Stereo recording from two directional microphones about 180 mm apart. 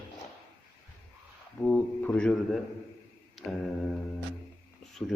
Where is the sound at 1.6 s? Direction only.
5° left (ahead or behind).